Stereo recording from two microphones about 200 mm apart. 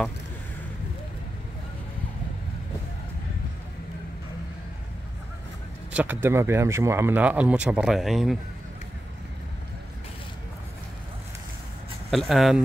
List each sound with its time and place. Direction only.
5.9 s speech: 10° right (ahead or behind)
12.1 s speech: centre (ahead or behind)